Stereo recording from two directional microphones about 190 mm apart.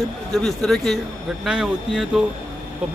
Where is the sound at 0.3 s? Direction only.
Centre (ahead or behind).